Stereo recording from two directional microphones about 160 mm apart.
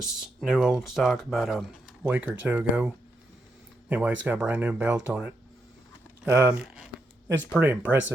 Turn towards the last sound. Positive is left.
turn(degrees=-10)  # may be behind; listen again after turning